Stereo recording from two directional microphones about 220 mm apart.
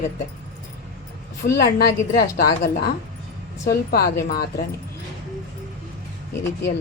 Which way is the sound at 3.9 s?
45° left (ahead or behind).